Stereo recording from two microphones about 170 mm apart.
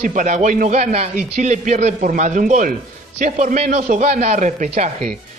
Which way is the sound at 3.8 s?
60° right (ahead or behind).